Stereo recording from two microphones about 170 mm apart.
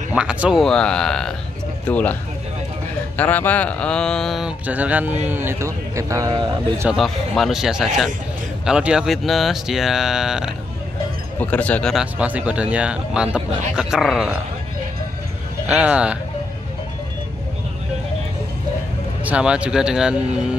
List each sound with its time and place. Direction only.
0.1 s speech: 5° right (ahead or behind)
3.2 s speech: 10° left (ahead or behind); by 6.9 s 20° right (ahead or behind)
6.9 s speech: centre (ahead or behind)
11.3 s speech: 10° left (ahead or behind)
15.7 s speech: 5° right (ahead or behind)
19.2 s speech: 5° right (ahead or behind)